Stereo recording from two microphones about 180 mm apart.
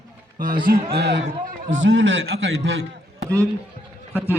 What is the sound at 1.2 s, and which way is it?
Speech, 45° right (ahead or behind).